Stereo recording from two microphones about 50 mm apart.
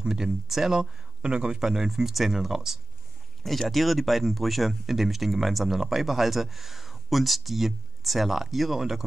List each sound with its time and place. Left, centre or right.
0.0 s speech: centre